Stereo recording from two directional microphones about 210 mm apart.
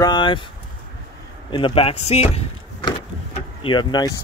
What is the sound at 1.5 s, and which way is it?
Speech, 25° left (ahead or behind).